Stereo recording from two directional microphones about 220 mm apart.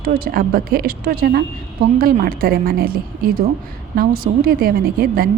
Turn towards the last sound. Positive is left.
turn(degrees=-40)  # may be behind; listen again after turning